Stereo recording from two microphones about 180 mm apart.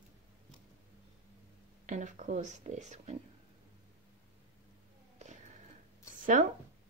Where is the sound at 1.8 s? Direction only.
45° right (ahead or behind).